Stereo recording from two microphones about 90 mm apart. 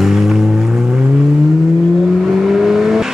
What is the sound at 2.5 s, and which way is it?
Vehicle, 5° right (ahead or behind).